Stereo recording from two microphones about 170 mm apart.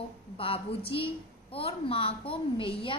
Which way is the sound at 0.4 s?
35° left (ahead or behind).